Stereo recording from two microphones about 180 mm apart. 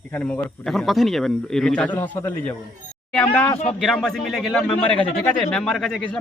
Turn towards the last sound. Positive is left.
turn(degrees=5)  # may be behind; listen again after turning